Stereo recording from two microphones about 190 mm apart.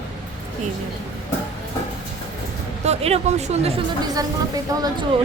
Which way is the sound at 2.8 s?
35° right (ahead or behind).